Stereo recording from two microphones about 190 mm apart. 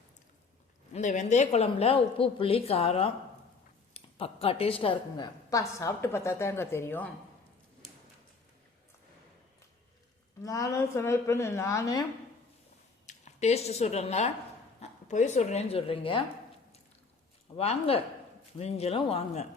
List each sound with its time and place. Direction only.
0.9 s a woman's voice: 40° left (ahead or behind); by 7.1 s 10° left (ahead or behind)
10.4 s a woman's voice: 15° left (ahead or behind)
13.1 s speech: 35° left (ahead or behind)
17.6 s a woman's voice: 30° left (ahead or behind)